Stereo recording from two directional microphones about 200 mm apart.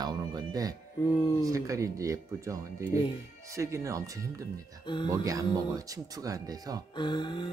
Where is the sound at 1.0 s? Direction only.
25° left (ahead or behind).